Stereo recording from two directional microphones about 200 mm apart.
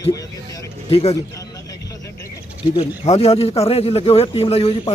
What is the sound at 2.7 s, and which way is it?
A man's voice, 30° left (ahead or behind).